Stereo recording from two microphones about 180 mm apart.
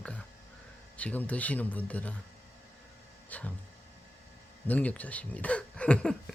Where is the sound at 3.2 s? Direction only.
10° left (ahead or behind).